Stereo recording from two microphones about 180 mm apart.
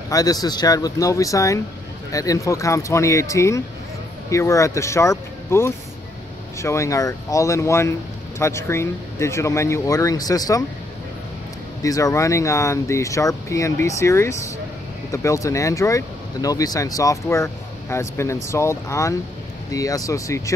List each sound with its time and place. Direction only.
0.1 s speech: 20° left (ahead or behind)
11.8 s speech: 20° left (ahead or behind)